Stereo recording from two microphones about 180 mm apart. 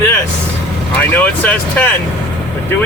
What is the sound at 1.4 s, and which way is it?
Speech, 10° left (ahead or behind).